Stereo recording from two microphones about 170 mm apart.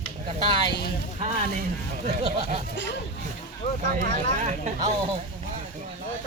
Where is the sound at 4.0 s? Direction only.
45° right (ahead or behind).